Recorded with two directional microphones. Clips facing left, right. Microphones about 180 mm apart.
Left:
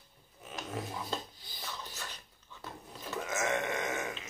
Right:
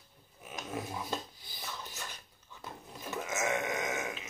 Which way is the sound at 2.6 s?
15° right (ahead or behind).